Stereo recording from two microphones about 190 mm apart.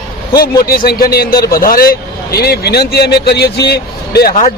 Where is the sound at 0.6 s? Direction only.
50° left (ahead or behind).